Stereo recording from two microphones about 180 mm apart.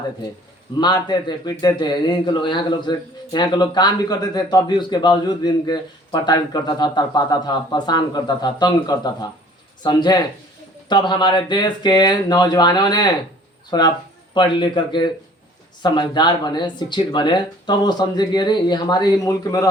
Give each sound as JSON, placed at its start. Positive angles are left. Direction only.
{"t": 0.8, "sound": "a man's voice", "side_deg": 25}